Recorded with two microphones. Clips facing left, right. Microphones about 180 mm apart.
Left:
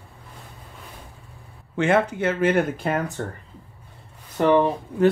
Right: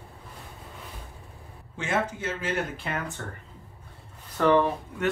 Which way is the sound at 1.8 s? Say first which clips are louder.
Left 9 dB; 65° left (ahead or behind).